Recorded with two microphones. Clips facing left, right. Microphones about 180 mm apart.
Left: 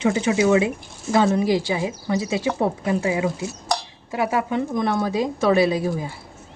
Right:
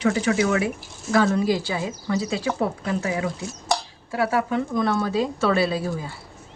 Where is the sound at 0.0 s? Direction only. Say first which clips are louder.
Left 2 dB; 20° left (ahead or behind).